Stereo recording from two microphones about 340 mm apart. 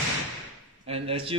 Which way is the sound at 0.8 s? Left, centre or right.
Centre.